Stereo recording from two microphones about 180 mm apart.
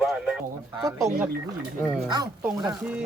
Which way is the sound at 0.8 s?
20° right (ahead or behind).